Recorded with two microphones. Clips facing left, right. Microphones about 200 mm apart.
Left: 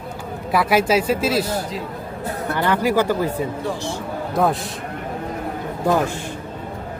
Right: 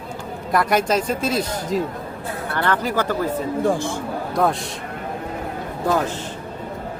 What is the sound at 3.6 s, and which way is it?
Speech, 50° right (ahead or behind).